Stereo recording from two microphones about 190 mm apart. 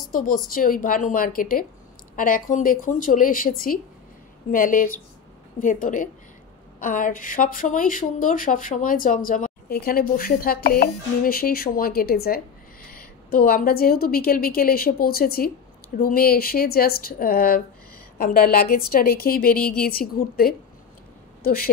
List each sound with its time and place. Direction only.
0.1 s a woman's voice: 50° left (ahead or behind)